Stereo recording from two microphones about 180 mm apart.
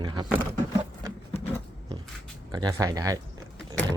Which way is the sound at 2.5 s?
20° right (ahead or behind).